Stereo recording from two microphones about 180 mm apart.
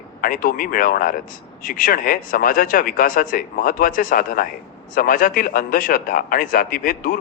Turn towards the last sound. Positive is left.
turn(degrees=50)  # may be behind; listen again after turning